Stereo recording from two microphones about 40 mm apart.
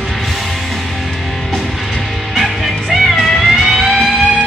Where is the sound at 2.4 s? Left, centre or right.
Centre.